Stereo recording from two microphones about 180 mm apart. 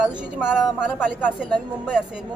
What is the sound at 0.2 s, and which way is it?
Speech, 5° right (ahead or behind).